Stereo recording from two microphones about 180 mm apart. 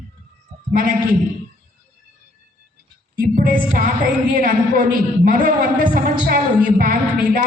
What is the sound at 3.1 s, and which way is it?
Music, 55° right (ahead or behind).